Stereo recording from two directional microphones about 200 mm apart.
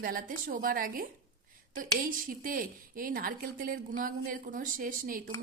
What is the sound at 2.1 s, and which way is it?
A woman's voice, 45° right (ahead or behind).